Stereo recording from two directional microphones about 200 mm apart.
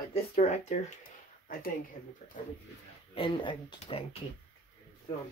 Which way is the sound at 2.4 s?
40° left (ahead or behind).